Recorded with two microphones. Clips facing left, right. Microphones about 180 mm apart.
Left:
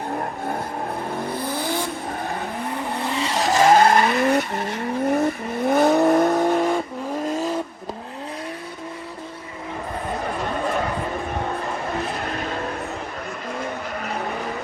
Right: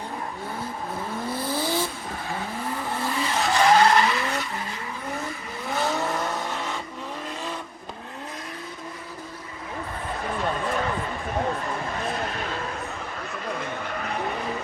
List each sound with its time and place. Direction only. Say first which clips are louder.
3.0 s vehicle: left 3 dB; 25° left (ahead or behind); by 7.5 s 40° left (ahead or behind)